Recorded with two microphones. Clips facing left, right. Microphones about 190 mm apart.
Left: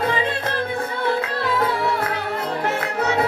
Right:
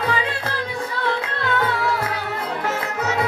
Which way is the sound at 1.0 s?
5° left (ahead or behind).